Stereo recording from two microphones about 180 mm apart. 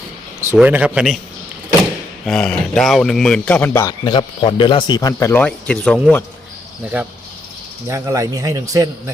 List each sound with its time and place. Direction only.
0.5 s speech: 5° right (ahead or behind)
2.2 s a man's voice: 5° left (ahead or behind); by 5.3 s 20° left (ahead or behind)
5.3 s a man's voice: 10° left (ahead or behind)
6.9 s a man's voice: 10° right (ahead or behind)